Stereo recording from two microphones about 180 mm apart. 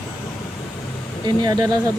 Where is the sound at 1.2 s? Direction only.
20° right (ahead or behind).